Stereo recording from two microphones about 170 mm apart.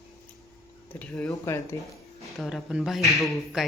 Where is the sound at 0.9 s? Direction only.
10° left (ahead or behind).